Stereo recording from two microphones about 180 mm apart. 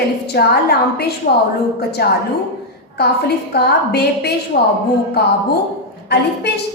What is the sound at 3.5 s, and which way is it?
Speech, 65° left (ahead or behind).